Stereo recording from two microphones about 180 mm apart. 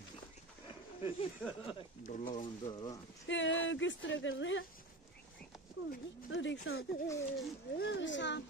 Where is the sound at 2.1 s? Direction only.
45° left (ahead or behind).